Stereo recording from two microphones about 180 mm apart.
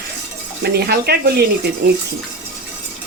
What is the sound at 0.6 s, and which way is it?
Speech, 65° right (ahead or behind).